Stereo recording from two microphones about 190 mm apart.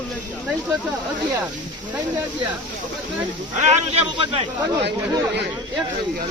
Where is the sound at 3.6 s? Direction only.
30° right (ahead or behind).